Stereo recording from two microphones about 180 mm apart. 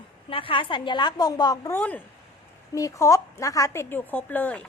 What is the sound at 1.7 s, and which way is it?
Speech, 10° left (ahead or behind).